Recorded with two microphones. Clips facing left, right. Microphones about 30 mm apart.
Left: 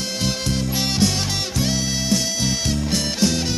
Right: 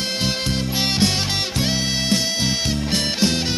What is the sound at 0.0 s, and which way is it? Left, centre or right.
Music, right.